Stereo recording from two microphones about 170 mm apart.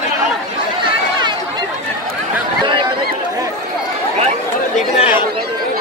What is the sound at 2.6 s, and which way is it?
Chatter, 30° right (ahead or behind).